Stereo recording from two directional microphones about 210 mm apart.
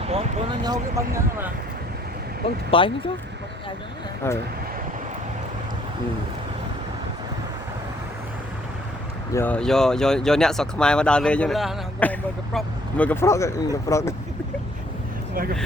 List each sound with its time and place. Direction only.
0.1 s speech: 25° right (ahead or behind)
2.6 s speech: 25° left (ahead or behind)
4.2 s speech: 10° left (ahead or behind)
9.3 s speech: 10° left (ahead or behind)